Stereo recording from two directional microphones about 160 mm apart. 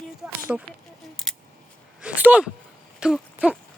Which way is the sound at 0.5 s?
5° right (ahead or behind).